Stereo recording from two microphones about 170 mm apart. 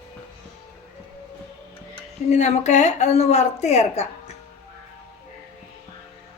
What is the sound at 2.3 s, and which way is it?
A woman's voice, 45° left (ahead or behind).